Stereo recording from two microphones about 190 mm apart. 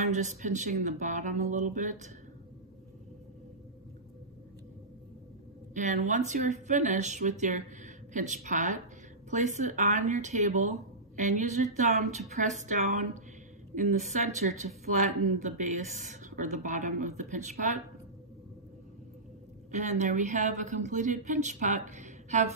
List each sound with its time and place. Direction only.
0.0 s speech: 40° right (ahead or behind)
5.8 s speech: 40° right (ahead or behind)
19.7 s speech: 40° right (ahead or behind)